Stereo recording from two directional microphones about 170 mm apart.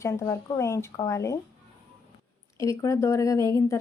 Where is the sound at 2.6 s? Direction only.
20° left (ahead or behind).